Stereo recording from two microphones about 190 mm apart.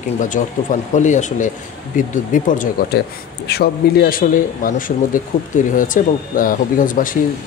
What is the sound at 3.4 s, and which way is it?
Speech, 55° left (ahead or behind).